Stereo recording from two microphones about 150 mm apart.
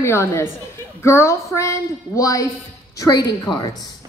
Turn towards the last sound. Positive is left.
turn(degrees=30)  # may be behind; listen again after turning